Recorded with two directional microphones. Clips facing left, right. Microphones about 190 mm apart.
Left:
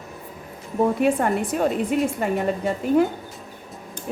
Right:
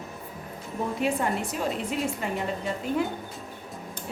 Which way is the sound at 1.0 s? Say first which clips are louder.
Left 6 dB; 55° left (ahead or behind).